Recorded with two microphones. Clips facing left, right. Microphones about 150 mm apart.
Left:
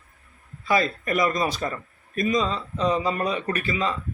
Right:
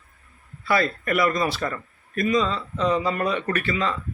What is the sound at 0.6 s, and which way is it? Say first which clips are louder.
A man's voice: even; 15° left (ahead or behind).